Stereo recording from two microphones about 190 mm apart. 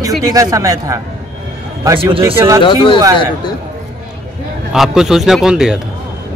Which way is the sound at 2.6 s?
25° left (ahead or behind).